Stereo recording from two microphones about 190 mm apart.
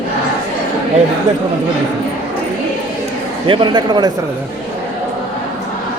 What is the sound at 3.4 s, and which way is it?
Speech, 25° right (ahead or behind).